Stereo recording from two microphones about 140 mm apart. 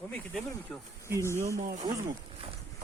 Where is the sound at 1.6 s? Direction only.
70° right (ahead or behind).